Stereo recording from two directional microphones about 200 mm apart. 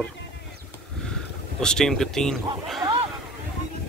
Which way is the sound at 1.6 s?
Centre (ahead or behind).